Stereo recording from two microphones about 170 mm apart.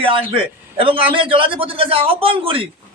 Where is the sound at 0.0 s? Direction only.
30° right (ahead or behind).